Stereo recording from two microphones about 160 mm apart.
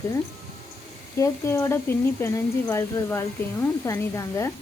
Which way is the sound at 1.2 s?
15° left (ahead or behind).